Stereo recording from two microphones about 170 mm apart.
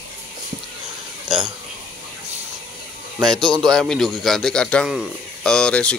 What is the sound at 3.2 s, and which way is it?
Speech, centre (ahead or behind).